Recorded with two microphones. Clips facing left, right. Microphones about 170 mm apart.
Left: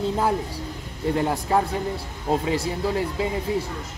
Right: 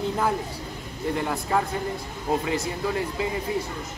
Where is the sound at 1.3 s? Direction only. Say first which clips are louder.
Left 2 dB; 25° left (ahead or behind).